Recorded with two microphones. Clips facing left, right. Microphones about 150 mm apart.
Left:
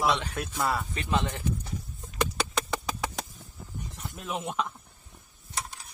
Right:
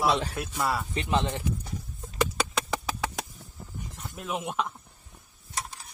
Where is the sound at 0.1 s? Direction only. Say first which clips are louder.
Right 2 dB; 35° right (ahead or behind).